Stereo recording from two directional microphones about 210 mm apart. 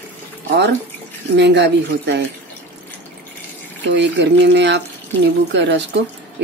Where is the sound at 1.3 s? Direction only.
55° right (ahead or behind).